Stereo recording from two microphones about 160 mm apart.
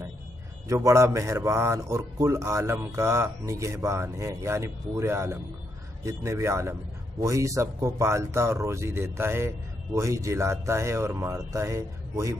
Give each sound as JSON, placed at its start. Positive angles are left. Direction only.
{"t": 0.7, "sound": "a man's voice", "side_deg": -20}